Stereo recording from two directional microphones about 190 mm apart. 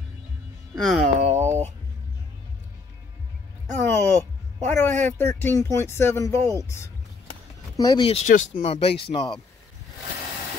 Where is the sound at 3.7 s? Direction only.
15° left (ahead or behind).